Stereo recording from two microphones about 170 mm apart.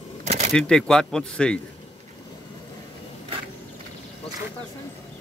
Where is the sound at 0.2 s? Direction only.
45° right (ahead or behind).